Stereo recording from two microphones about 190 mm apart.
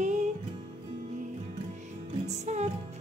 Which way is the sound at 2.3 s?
35° right (ahead or behind).